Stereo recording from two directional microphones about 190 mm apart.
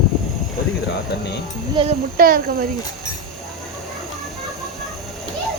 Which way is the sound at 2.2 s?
50° right (ahead or behind).